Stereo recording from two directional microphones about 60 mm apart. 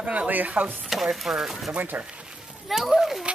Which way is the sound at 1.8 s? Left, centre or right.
Right.